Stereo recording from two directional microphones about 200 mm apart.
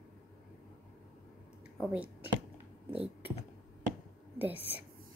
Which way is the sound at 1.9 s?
5° right (ahead or behind).